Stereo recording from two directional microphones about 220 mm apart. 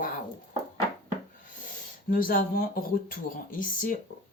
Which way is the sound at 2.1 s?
40° left (ahead or behind).